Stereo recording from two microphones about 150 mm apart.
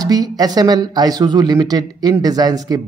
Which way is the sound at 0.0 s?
25° right (ahead or behind).